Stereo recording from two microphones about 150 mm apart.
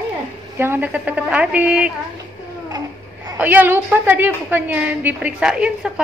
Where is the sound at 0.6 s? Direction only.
15° right (ahead or behind).